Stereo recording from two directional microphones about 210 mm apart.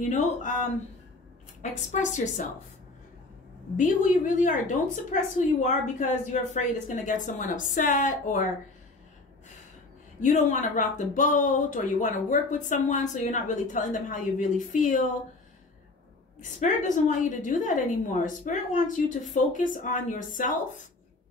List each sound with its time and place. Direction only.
0.1 s speech: 35° left (ahead or behind)
1.6 s speech: 35° left (ahead or behind)
3.7 s speech: 40° left (ahead or behind)
10.2 s speech: 35° left (ahead or behind)
16.3 s speech: 35° left (ahead or behind)